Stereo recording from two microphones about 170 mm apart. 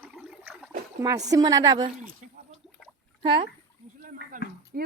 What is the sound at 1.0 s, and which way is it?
Speech, 20° right (ahead or behind).